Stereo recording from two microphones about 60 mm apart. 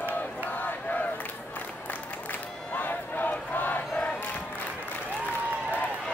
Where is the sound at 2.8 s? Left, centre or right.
Left.